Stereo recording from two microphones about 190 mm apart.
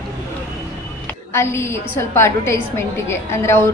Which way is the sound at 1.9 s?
15° left (ahead or behind).